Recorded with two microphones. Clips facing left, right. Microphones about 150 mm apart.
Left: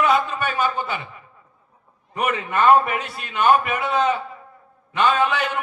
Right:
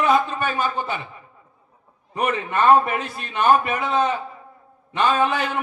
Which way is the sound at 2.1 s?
35° right (ahead or behind).